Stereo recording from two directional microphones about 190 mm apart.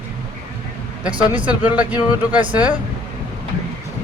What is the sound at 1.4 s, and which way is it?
Speech, 5° right (ahead or behind).